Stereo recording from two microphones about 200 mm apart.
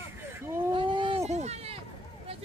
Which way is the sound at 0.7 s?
25° right (ahead or behind).